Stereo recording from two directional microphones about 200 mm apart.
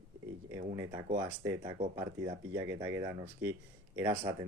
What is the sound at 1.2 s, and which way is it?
Speech, 15° right (ahead or behind).